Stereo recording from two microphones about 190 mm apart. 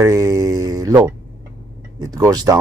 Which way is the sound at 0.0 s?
15° right (ahead or behind).